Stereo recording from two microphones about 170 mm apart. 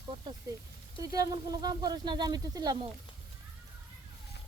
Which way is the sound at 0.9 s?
20° right (ahead or behind).